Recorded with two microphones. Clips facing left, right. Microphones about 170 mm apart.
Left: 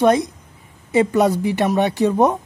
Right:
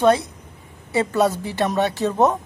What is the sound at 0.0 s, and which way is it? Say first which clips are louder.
Speech: left 2 dB; 15° left (ahead or behind).